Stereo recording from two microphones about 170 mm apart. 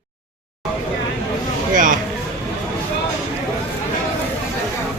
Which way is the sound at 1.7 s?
50° right (ahead or behind).